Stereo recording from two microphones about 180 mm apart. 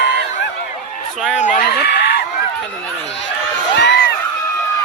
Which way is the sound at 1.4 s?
60° left (ahead or behind).